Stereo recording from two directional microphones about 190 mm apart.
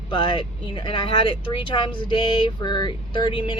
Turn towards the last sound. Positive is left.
turn(degrees=25)  # may be behind; listen again after turning